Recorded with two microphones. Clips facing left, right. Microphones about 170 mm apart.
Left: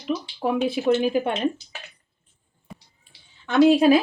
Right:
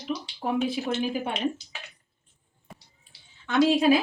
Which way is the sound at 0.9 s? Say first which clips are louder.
Left 6 dB; 65° left (ahead or behind).